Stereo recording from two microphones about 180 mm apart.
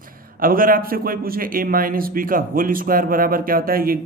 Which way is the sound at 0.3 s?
50° right (ahead or behind).